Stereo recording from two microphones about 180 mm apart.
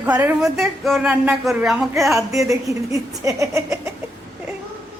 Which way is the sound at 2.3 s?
20° right (ahead or behind).